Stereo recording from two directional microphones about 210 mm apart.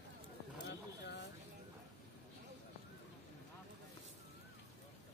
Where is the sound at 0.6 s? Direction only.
55° left (ahead or behind).